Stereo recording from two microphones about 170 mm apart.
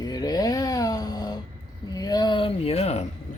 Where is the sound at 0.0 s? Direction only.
20° left (ahead or behind); by 3.1 s 40° left (ahead or behind).